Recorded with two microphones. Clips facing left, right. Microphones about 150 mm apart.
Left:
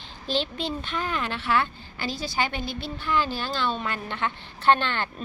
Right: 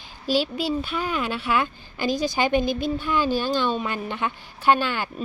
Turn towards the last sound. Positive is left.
turn(degrees=-10)  # may be behind; listen again after turning